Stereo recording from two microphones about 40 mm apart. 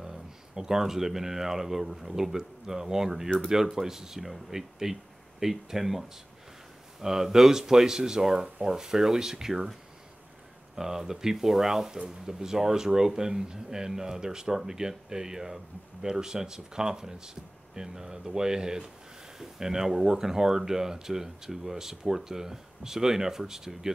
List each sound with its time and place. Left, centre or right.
0.0 s speech: centre
10.8 s speech: centre